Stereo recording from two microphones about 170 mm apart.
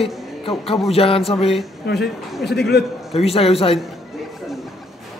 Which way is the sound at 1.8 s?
75° left (ahead or behind).